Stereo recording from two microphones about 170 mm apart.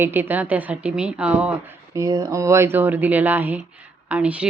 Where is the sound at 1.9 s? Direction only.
20° right (ahead or behind).